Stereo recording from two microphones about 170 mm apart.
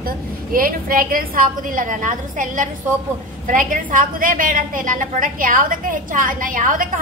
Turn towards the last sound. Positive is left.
turn(degrees=-50)  # may be behind; listen again after turning